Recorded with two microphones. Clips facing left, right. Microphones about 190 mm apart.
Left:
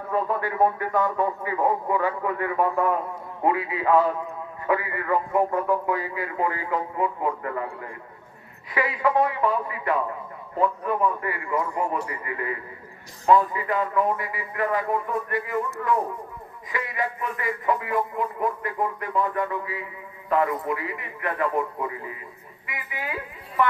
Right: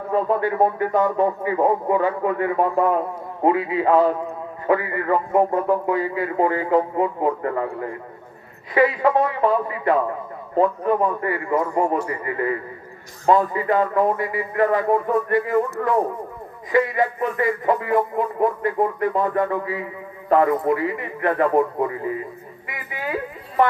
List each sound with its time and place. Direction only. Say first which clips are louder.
0.1 s a man's voice: right 5 dB; 25° right (ahead or behind)